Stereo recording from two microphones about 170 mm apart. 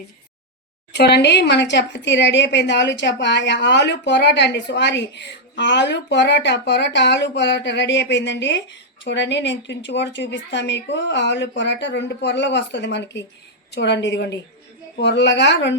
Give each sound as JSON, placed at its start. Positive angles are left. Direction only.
{"t": 0.9, "sound": "a woman's voice", "side_deg": 75}